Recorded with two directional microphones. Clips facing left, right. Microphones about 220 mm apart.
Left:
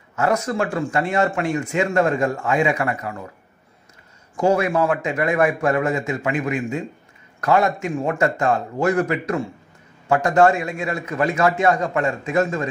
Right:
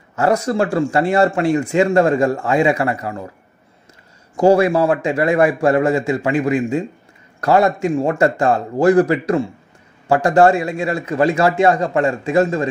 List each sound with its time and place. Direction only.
0.1 s a man's voice: 35° right (ahead or behind)
4.4 s a man's voice: 35° right (ahead or behind)